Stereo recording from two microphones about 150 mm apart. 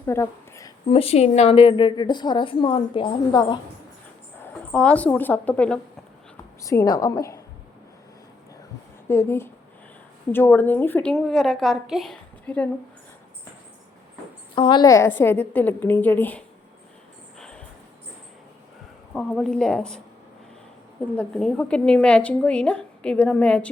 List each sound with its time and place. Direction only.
0.0 s a sound: 15° left (ahead or behind)
0.9 s a woman's voice: 40° left (ahead or behind)
4.7 s a woman's voice: 5° left (ahead or behind)
6.6 s a woman's voice: 20° left (ahead or behind)
9.0 s a woman's voice: 15° left (ahead or behind)
14.5 s a woman's voice: 35° left (ahead or behind)
14.8 s a woman's voice: 20° left (ahead or behind)
17.3 s music: 5° left (ahead or behind)
19.1 s a woman's voice: 5° left (ahead or behind)
21.2 s a woman's voice: 5° left (ahead or behind)